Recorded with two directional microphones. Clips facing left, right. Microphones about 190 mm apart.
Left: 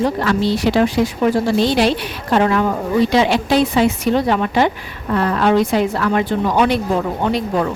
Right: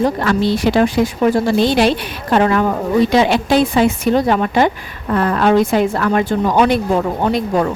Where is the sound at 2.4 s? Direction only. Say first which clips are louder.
Right 2 dB; 50° right (ahead or behind).